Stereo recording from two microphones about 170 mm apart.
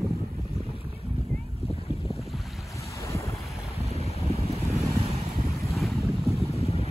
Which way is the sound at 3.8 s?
35° left (ahead or behind).